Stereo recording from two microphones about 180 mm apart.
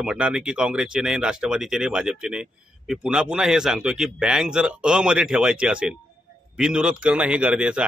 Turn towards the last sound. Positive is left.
turn(degrees=-5)  # may be behind; listen again after turning